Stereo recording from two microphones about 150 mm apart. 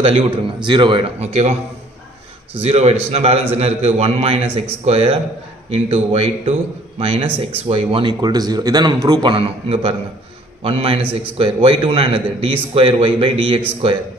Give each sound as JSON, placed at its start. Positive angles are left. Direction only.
{"t": 0.0, "sound": "a man's voice", "side_deg": -40}
{"t": 1.2, "sound": "a man's voice", "side_deg": -45}